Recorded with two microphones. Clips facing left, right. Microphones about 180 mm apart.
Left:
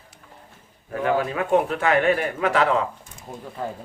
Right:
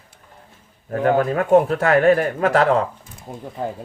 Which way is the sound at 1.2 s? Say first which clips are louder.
Right 6 dB; 45° right (ahead or behind).